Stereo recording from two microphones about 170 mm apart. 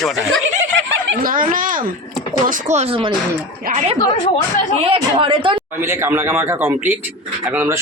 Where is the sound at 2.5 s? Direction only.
40° right (ahead or behind).